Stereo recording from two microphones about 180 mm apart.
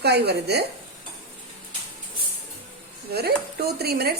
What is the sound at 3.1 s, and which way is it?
Speech, 60° right (ahead or behind).